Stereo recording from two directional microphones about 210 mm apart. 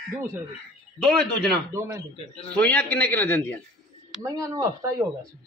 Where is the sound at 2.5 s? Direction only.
5° left (ahead or behind).